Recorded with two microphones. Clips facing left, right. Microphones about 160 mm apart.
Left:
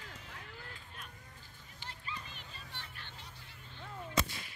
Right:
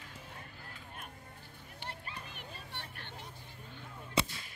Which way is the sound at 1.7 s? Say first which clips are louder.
Right 1 dB; 60° right (ahead or behind).